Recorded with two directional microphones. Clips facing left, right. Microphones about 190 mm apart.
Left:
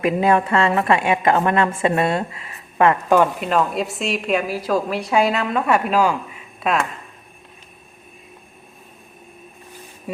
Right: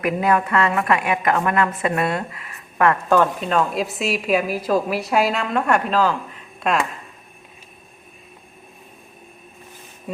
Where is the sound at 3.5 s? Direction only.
Centre (ahead or behind).